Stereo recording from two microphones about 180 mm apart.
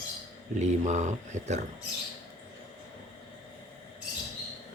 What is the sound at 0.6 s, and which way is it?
Speech, 40° right (ahead or behind).